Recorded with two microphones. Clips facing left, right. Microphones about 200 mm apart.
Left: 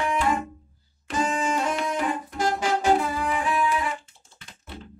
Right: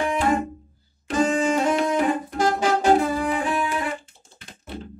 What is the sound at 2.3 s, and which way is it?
Saxophone, 40° right (ahead or behind).